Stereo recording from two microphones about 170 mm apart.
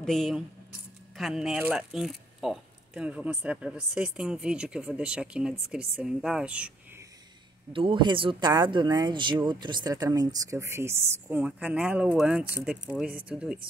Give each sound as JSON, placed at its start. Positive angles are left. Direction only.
{"t": 0.0, "sound": "speech", "side_deg": 0}
{"t": 7.7, "sound": "speech", "side_deg": -30}